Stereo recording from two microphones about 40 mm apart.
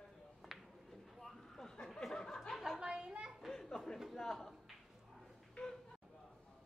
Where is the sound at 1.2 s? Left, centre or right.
Centre.